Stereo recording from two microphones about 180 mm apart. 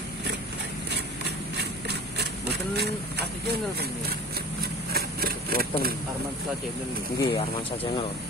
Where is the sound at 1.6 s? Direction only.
65° right (ahead or behind).